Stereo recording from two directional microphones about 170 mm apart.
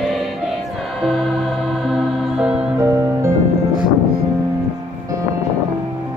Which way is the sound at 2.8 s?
15° right (ahead or behind).